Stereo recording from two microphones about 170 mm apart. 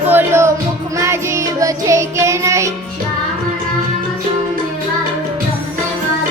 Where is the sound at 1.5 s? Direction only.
20° right (ahead or behind).